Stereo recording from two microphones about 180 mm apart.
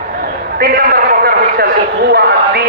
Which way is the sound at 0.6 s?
55° right (ahead or behind).